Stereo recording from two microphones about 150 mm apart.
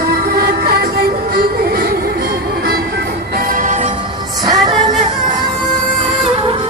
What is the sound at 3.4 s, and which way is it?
Music, 65° right (ahead or behind).